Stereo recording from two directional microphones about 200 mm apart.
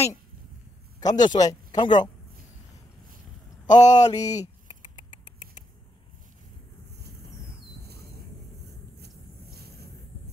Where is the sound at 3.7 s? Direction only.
35° left (ahead or behind).